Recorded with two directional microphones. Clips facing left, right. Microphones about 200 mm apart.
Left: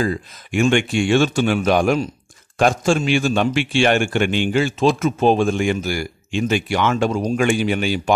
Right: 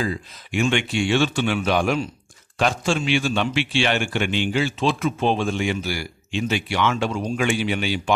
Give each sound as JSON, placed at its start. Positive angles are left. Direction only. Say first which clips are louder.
{"t": 0.0, "sound": "a man's voice", "louder": "left 4 dB", "side_deg": 50}